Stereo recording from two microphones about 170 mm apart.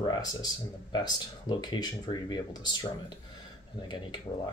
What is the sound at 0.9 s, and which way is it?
Speech, 25° left (ahead or behind).